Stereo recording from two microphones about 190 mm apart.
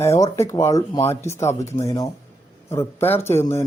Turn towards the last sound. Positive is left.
turn(degrees=10)  # may be behind; listen again after turning